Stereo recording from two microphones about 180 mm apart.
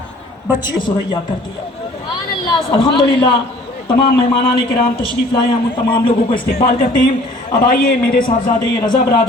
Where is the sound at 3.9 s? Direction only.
60° left (ahead or behind).